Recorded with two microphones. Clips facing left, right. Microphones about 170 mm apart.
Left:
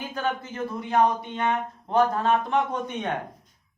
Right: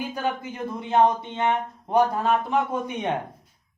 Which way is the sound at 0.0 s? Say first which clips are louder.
Right 1 dB; 10° right (ahead or behind).